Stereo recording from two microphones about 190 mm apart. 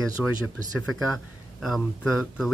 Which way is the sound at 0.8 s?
Centre (ahead or behind).